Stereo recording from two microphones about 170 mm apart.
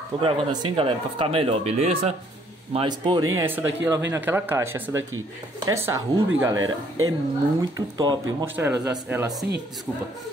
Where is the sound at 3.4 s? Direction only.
10° right (ahead or behind).